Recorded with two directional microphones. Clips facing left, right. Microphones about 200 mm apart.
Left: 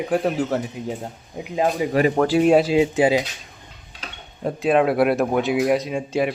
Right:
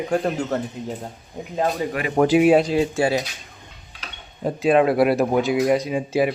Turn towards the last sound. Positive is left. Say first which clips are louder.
# right 2 dB
turn(degrees=0)  # may be behind; listen again after turning